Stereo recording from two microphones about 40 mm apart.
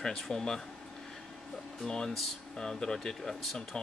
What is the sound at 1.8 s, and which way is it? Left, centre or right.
Speech, centre.